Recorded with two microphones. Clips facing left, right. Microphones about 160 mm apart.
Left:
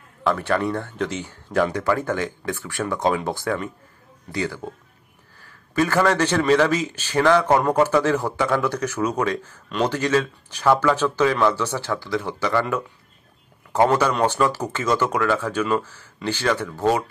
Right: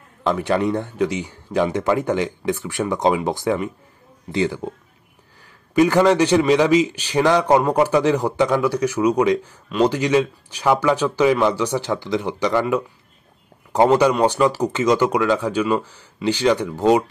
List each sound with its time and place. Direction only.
0.2 s a man's voice: 15° right (ahead or behind)